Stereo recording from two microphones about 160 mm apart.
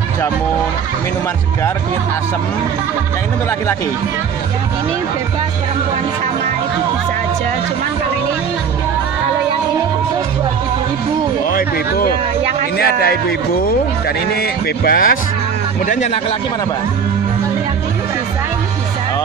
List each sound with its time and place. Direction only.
11.5 s speech: 65° left (ahead or behind)
12.7 s a man's voice: 80° left
14.9 s speech: 65° left (ahead or behind)